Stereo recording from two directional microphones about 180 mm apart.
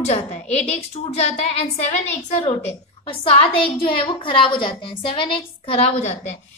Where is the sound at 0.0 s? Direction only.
40° left (ahead or behind).